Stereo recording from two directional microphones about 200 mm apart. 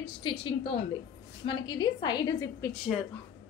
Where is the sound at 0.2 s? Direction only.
25° left (ahead or behind).